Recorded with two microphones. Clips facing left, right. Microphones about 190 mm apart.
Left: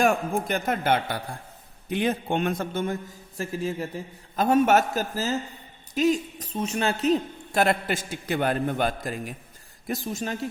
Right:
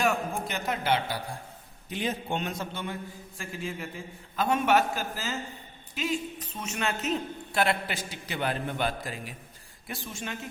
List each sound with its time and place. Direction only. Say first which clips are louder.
0.0 s a man's voice: left 5 dB; 50° left (ahead or behind)